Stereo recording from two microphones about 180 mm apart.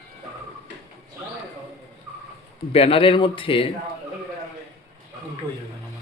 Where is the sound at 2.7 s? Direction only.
30° left (ahead or behind).